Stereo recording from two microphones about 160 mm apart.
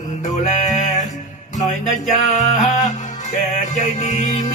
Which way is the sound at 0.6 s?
50° left (ahead or behind).